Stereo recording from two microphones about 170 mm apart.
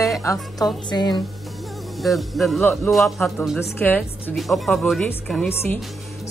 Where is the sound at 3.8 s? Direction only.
10° left (ahead or behind).